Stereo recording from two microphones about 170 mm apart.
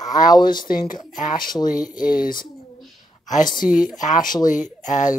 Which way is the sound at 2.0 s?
55° left (ahead or behind).